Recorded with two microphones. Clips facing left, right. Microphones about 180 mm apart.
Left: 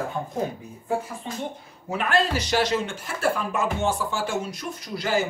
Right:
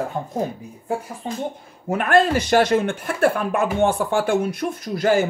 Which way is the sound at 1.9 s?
55° right (ahead or behind).